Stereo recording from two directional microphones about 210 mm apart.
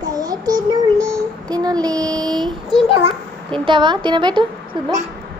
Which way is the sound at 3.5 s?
25° right (ahead or behind).